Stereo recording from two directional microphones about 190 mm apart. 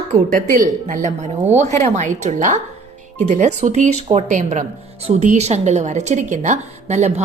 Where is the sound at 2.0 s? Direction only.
40° right (ahead or behind).